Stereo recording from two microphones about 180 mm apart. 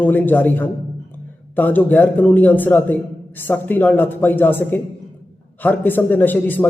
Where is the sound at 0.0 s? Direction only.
10° left (ahead or behind).